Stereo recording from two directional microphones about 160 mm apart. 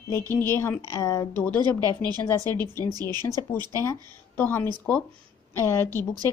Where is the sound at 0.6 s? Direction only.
20° left (ahead or behind).